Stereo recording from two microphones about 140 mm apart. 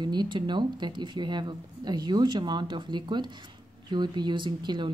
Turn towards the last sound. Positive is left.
turn(degrees=-35)  # may be behind; listen again after turning